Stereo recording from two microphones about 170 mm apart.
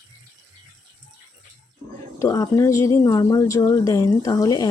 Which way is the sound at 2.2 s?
20° left (ahead or behind).